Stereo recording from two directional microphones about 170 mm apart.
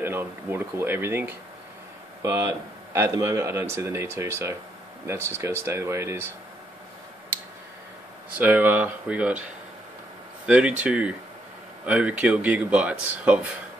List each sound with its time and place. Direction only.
0.0 s speech: 15° right (ahead or behind)
8.4 s speech: 10° right (ahead or behind)
10.4 s speech: 5° right (ahead or behind)